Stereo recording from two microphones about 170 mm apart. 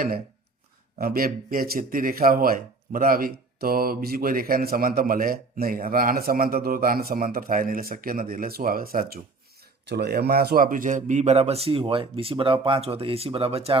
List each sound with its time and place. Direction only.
0.9 s speech: 60° right (ahead or behind)
9.9 s a man's voice: 70° right (ahead or behind); by 13.7 s 35° right (ahead or behind)